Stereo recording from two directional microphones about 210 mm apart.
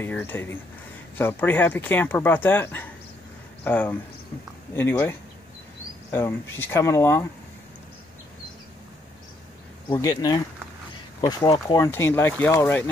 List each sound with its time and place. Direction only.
0.0 s speech: 10° left (ahead or behind)
6.1 s speech: 10° left (ahead or behind)
9.8 s speech: 20° left (ahead or behind)